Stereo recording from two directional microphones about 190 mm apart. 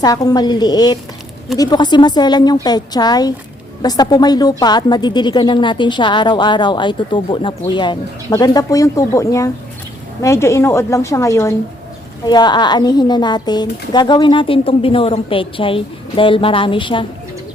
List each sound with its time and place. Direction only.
0.0 s a woman's voice: 20° left (ahead or behind)